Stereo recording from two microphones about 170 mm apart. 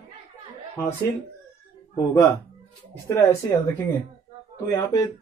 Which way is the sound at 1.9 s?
15° left (ahead or behind).